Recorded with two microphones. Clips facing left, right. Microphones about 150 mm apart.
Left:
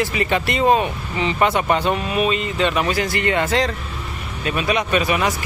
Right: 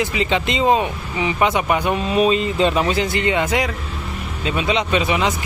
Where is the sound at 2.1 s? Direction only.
30° right (ahead or behind).